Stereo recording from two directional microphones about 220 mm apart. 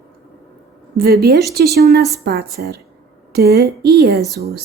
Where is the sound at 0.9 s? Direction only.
45° right (ahead or behind).